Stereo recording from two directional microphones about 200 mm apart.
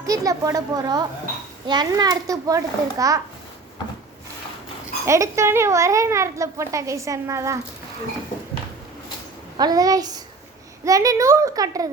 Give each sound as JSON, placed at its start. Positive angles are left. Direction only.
{"t": 0.0, "sound": "a child's voice", "side_deg": -15}
{"t": 5.0, "sound": "a child's voice", "side_deg": -15}
{"t": 9.6, "sound": "a woman's voice", "side_deg": -20}